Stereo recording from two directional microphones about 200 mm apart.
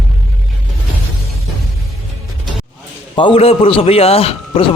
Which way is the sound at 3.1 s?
25° left (ahead or behind).